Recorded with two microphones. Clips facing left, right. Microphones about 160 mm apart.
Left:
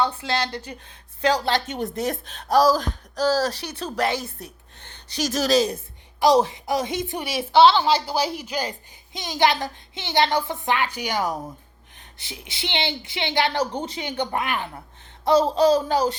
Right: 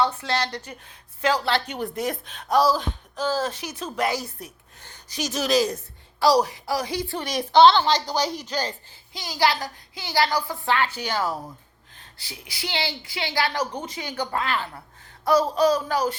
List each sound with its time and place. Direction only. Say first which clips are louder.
0.1 s a woman's voice: left 1 dB; 30° left (ahead or behind)
1.2 s speech: left 1 dB; 40° left (ahead or behind)
5.5 s a woman's voice: left 1 dB; 20° left (ahead or behind)
7.3 s a woman's voice: even; 5° left (ahead or behind)
9.1 s a woman's voice: left 2 dB; 20° left (ahead or behind)